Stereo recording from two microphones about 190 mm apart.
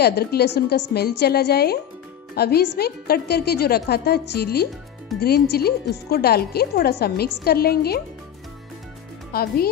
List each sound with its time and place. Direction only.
0.0 s speech: 55° left (ahead or behind)
9.3 s speech: 55° left (ahead or behind)